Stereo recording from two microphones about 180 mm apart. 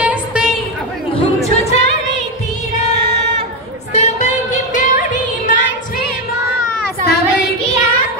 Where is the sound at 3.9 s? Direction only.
40° left (ahead or behind).